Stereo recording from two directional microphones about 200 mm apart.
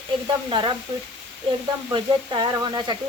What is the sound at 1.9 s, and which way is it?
Speech, 20° right (ahead or behind).